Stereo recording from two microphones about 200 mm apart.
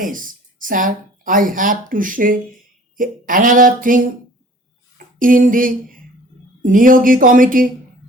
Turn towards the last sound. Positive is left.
turn(degrees=-40)  # may be behind; listen again after turning